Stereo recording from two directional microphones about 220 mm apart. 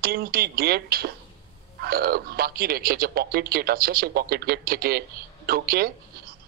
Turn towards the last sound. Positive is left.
turn(degrees=-45)  # may be behind; listen again after turning